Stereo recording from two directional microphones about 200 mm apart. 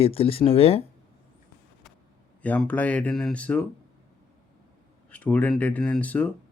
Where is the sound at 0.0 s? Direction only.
30° left (ahead or behind).